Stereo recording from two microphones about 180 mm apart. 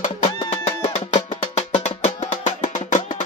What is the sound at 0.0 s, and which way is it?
Music, 35° left (ahead or behind).